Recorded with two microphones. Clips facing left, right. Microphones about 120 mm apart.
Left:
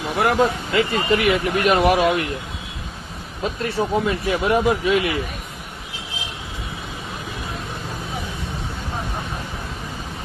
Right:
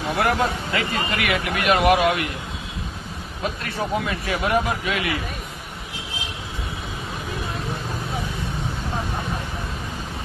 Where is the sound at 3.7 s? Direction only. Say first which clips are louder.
Left 5 dB; 30° left (ahead or behind).